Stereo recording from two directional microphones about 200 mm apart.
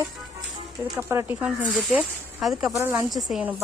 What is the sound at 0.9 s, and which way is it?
A woman's voice, 10° right (ahead or behind).